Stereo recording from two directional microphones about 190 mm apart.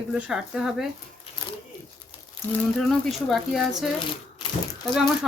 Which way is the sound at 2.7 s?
Centre (ahead or behind).